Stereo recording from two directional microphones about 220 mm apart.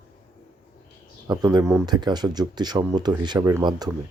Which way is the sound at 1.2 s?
20° right (ahead or behind).